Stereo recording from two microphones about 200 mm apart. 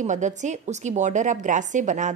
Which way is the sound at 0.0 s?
35° right (ahead or behind).